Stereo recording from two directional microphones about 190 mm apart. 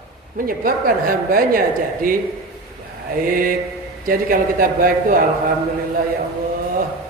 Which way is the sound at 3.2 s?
45° right (ahead or behind).